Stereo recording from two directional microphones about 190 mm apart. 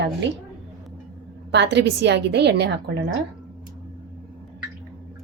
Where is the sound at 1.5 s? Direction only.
65° right (ahead or behind).